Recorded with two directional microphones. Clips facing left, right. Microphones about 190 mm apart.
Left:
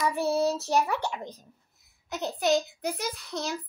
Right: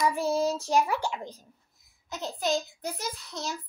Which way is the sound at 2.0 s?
65° left (ahead or behind).